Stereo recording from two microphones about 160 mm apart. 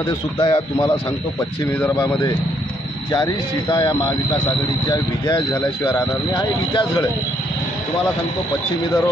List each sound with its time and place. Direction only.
0.4 s speech: 30° left (ahead or behind)